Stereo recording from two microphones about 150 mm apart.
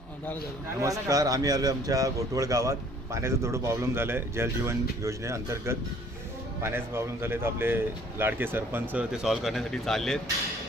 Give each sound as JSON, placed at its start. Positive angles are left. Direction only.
{"t": 0.8, "sound": "speech", "side_deg": -20}